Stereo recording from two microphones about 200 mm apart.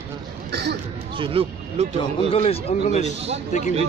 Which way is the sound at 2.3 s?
30° left (ahead or behind).